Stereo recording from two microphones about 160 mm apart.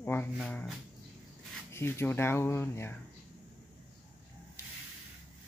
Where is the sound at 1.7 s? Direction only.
15° left (ahead or behind).